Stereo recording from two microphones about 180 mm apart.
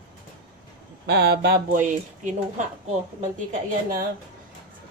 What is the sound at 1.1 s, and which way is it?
Speech, 65° right (ahead or behind).